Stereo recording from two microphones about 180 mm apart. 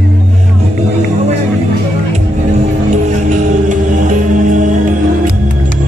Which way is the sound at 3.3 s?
45° right (ahead or behind).